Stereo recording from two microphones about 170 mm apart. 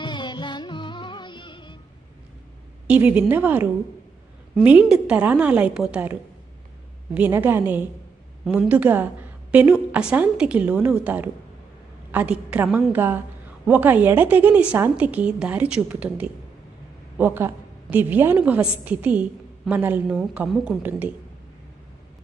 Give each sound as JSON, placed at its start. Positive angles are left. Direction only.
{"t": 0.0, "sound": "music", "side_deg": 25}
{"t": 2.8, "sound": "a woman's voice", "side_deg": -5}